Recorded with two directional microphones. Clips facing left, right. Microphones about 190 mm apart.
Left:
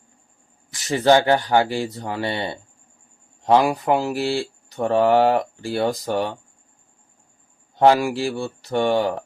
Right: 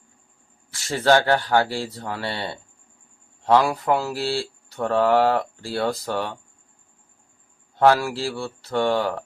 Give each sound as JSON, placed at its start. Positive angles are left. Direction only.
{"t": 0.7, "sound": "speech", "side_deg": 20}
{"t": 7.8, "sound": "speech", "side_deg": 15}